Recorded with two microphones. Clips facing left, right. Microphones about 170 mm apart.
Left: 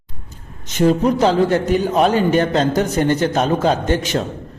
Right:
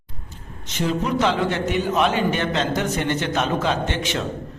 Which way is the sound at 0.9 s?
40° left (ahead or behind).